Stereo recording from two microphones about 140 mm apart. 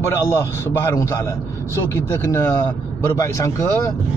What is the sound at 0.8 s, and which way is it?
Speech, 20° left (ahead or behind).